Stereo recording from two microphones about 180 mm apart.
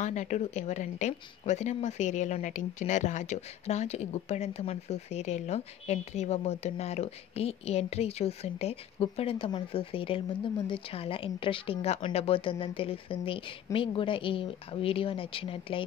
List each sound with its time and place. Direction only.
0.0 s a woman's voice: 40° left (ahead or behind)